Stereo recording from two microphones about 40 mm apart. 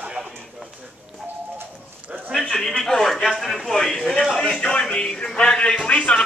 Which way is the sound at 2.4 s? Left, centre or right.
Centre.